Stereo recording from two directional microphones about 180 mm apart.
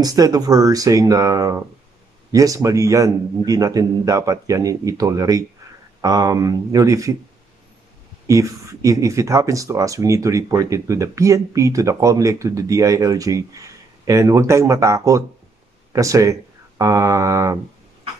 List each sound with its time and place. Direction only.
0.0 s a man's voice: 20° right (ahead or behind)
8.3 s speech: 15° right (ahead or behind)